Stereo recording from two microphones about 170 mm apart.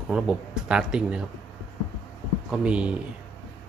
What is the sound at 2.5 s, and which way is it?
Speech, 5° right (ahead or behind).